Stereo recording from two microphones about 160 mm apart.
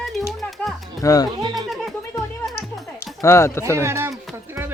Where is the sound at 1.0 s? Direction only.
20° left (ahead or behind).